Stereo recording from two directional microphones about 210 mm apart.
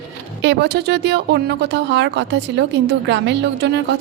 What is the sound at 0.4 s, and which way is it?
Speech, 55° right (ahead or behind).